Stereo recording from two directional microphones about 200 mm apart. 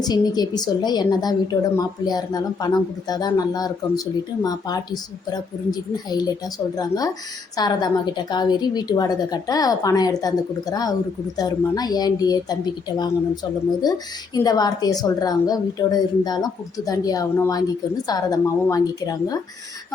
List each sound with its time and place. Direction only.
0.0 s a woman's voice: 20° left (ahead or behind)